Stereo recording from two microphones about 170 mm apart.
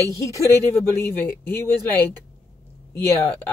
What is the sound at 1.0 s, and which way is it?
Speech, 10° left (ahead or behind).